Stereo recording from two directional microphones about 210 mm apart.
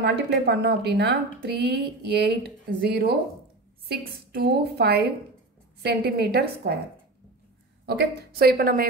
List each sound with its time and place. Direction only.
0.0 s a woman's voice: 55° right (ahead or behind)
7.8 s a woman's voice: 50° right (ahead or behind)